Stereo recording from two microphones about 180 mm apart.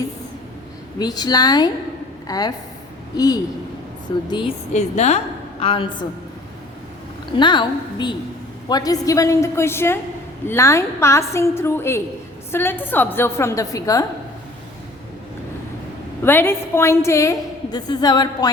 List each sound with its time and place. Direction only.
0.9 s a woman's voice: 20° left (ahead or behind)
4.7 s a woman's voice: 40° left (ahead or behind)
7.3 s a woman's voice: 25° left (ahead or behind)
16.2 s a woman's voice: 10° left (ahead or behind)